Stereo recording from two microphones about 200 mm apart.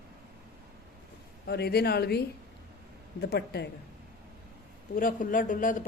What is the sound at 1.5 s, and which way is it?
A woman's voice, 55° left (ahead or behind).